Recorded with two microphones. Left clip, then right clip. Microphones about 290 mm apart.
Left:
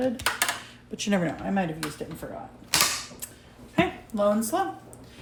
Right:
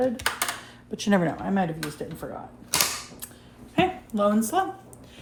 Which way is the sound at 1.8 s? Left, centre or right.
Centre.